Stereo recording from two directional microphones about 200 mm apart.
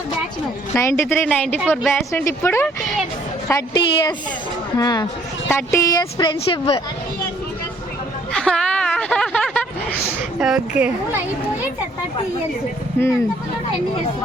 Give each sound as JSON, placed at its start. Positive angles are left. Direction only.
{"t": 0.8, "sound": "a woman's voice", "side_deg": 15}
{"t": 8.3, "sound": "a sound", "side_deg": 5}
{"t": 10.4, "sound": "a woman's voice", "side_deg": -5}